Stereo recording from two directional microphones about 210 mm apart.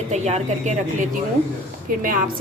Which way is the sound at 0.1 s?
30° right (ahead or behind).